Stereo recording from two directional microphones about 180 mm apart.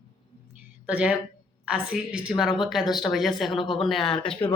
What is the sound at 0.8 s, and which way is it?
A man's voice, 5° right (ahead or behind).